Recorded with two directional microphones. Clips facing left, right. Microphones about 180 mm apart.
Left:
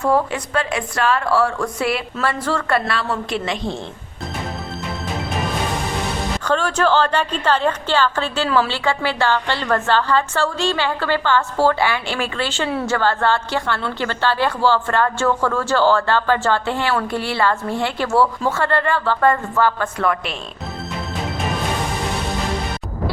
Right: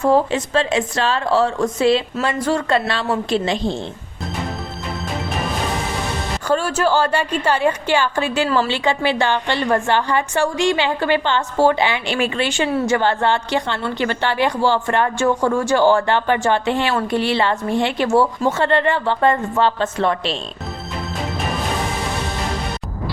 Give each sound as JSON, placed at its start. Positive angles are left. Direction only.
{"t": 0.0, "sound": "a woman's voice", "side_deg": -25}
{"t": 6.4, "sound": "a woman's voice", "side_deg": -10}